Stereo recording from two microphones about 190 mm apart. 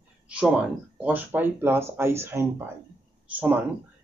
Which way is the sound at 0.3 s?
5° right (ahead or behind).